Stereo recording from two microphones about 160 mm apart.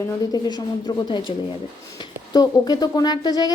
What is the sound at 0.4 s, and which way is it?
Speech, 25° left (ahead or behind).